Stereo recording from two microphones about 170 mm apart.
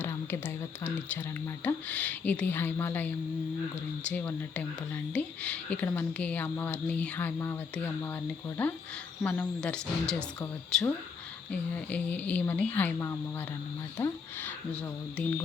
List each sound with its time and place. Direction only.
0.0 s a woman's voice: 15° left (ahead or behind)